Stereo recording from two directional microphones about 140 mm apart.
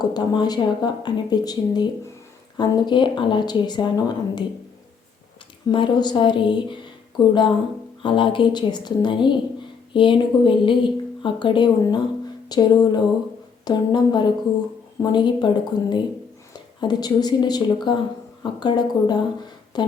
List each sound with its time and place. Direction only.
0.0 s speech: 30° left (ahead or behind)
5.6 s speech: 35° left (ahead or behind)
8.0 s speech: 35° left (ahead or behind)
12.5 s a sound: 30° left (ahead or behind)
13.7 s speech: 30° left (ahead or behind)